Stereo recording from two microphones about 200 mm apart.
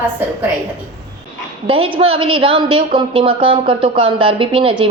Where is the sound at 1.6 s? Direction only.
30° right (ahead or behind).